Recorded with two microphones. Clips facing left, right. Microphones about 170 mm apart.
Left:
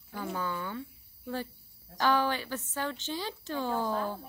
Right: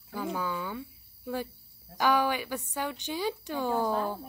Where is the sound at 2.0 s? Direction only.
10° right (ahead or behind).